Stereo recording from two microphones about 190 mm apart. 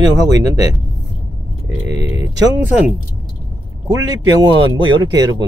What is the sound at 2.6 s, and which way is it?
Speech, 5° right (ahead or behind).